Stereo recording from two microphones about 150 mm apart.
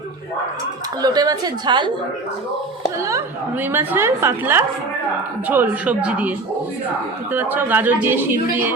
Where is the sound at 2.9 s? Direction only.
20° right (ahead or behind).